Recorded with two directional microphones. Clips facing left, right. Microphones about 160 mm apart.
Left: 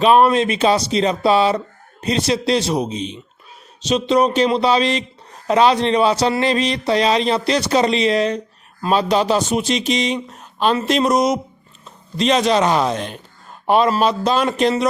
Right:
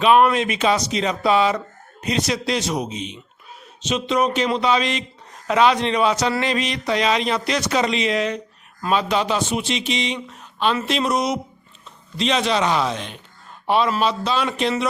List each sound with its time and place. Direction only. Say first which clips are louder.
0.0 s speech: left 2 dB; 35° left (ahead or behind)